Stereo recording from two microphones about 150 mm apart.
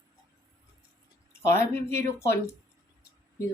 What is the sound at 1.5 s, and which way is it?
Speech, 15° left (ahead or behind).